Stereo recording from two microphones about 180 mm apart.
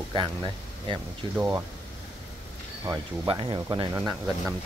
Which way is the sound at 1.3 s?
10° right (ahead or behind).